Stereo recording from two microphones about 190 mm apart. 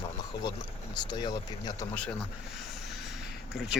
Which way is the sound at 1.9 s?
5° left (ahead or behind).